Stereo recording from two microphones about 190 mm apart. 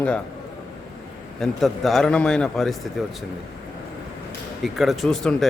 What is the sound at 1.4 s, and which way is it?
Speech, centre (ahead or behind).